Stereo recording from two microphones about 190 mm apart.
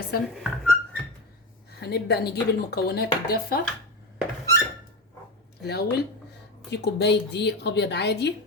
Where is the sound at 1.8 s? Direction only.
55° left (ahead or behind).